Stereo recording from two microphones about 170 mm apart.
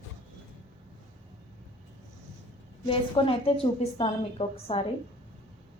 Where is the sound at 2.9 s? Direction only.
30° left (ahead or behind).